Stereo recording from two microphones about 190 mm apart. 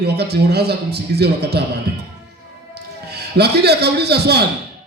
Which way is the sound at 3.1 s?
60° right (ahead or behind).